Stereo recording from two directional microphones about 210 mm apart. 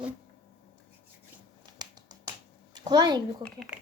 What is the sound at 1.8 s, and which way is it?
Finger snapping, 20° right (ahead or behind).